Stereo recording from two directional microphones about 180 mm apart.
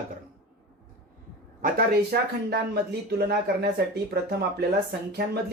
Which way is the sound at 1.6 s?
60° right (ahead or behind).